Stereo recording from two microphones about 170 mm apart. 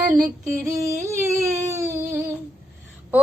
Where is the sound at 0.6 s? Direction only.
20° right (ahead or behind).